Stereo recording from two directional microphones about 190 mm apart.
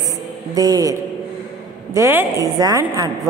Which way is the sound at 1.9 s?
15° right (ahead or behind).